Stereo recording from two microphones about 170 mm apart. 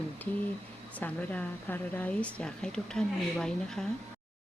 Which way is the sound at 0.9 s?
10° left (ahead or behind).